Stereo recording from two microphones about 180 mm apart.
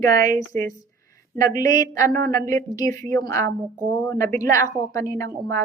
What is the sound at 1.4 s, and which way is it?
A woman's voice, 20° left (ahead or behind).